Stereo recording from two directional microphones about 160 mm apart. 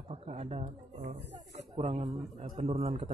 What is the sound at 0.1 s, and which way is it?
A man's voice, 40° right (ahead or behind).